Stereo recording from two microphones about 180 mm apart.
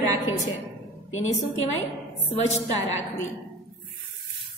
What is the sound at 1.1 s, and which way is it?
Speech, 90° left.